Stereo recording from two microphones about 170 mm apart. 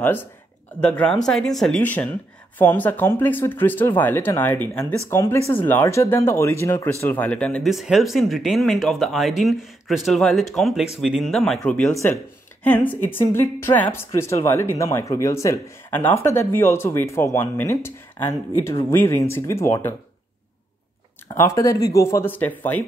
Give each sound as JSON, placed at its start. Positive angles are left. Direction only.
{"t": 0.0, "sound": "speech", "side_deg": 10}
{"t": 21.4, "sound": "speech", "side_deg": 20}